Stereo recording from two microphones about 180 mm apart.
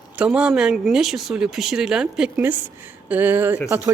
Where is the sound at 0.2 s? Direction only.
5° right (ahead or behind).